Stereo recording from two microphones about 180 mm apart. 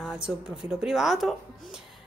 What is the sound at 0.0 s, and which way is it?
Speech, 5° right (ahead or behind).